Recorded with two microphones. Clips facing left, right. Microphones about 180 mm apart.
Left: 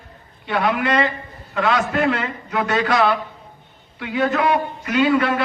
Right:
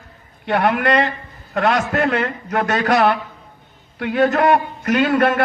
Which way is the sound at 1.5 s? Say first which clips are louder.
Right 2 dB; 45° right (ahead or behind).